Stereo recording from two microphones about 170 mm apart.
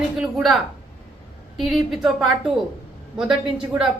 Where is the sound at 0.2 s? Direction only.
Centre (ahead or behind).